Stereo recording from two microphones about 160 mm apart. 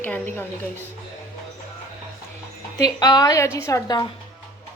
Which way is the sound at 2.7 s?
25° left (ahead or behind).